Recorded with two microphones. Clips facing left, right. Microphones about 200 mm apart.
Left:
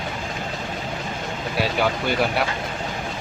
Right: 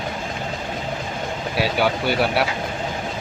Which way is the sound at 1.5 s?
Centre (ahead or behind).